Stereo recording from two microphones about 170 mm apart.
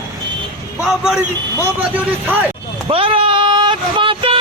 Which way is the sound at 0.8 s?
5° right (ahead or behind).